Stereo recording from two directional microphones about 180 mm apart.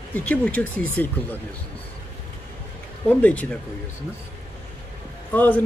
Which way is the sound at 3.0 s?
10° left (ahead or behind).